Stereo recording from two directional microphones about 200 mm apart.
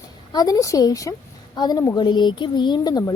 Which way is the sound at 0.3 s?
20° left (ahead or behind).